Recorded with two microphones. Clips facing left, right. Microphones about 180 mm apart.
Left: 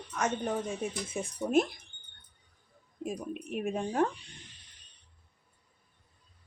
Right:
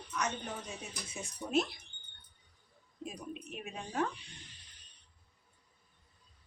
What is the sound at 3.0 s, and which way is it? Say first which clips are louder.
Speech: left 7 dB; 50° left (ahead or behind).